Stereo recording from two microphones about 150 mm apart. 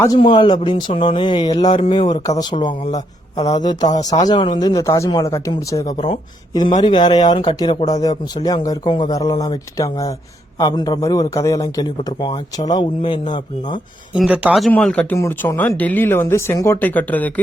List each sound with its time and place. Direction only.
0.2 s speech: 35° left (ahead or behind)
14.1 s speech: 5° right (ahead or behind)
14.7 s speech: 10° left (ahead or behind)